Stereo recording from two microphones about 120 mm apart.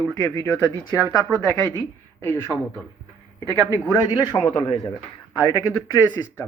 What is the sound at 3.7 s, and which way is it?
Speech, 25° left (ahead or behind).